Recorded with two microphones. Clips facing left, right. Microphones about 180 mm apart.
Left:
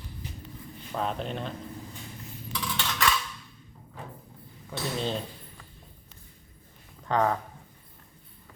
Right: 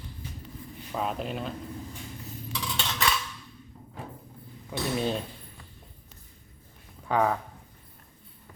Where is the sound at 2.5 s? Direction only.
20° right (ahead or behind).